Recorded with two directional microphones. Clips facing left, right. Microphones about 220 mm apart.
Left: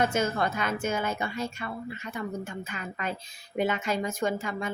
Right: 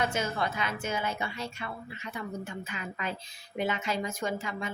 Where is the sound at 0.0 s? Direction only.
50° left (ahead or behind).